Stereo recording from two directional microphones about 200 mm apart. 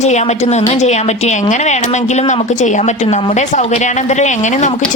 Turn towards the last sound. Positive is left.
turn(degrees=35)  # may be behind; listen again after turning